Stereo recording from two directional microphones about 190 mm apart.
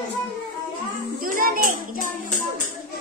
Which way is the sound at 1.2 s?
45° right (ahead or behind).